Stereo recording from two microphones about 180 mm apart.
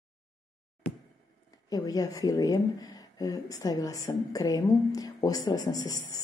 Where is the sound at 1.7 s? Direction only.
20° left (ahead or behind).